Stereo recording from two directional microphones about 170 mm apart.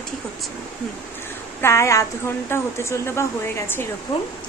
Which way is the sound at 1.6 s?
15° left (ahead or behind).